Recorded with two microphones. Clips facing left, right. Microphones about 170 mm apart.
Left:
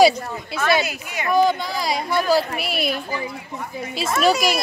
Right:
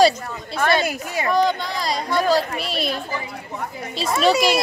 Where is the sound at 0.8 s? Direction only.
40° right (ahead or behind).